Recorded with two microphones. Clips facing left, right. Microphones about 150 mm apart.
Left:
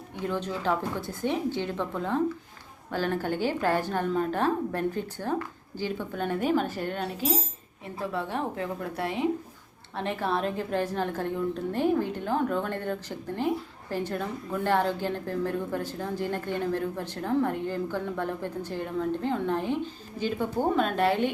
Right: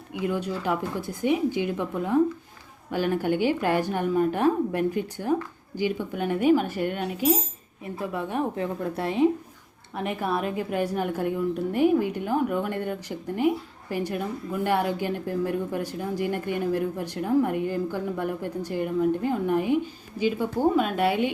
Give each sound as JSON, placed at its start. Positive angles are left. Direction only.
{"t": 0.1, "sound": "a woman's voice", "side_deg": -10}